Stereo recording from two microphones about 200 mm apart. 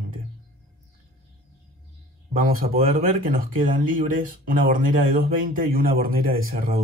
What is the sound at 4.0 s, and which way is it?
Speech, 45° right (ahead or behind).